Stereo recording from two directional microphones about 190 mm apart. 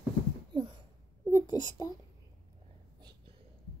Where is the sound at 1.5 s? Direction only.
20° left (ahead or behind).